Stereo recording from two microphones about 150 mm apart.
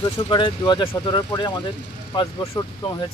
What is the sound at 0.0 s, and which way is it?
Speech, 30° left (ahead or behind).